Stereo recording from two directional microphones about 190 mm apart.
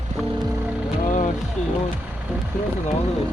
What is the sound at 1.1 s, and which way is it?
Vehicle, 40° left (ahead or behind).